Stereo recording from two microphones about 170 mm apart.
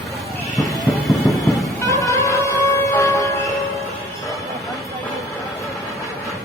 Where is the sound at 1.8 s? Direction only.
20° left (ahead or behind).